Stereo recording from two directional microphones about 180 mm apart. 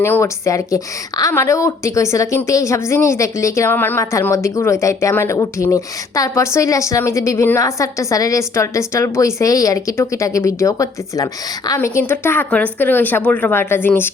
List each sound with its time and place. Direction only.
0.0 s speech: 15° left (ahead or behind)